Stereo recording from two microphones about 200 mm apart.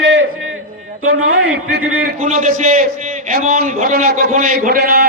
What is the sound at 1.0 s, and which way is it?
Speech, 90° right.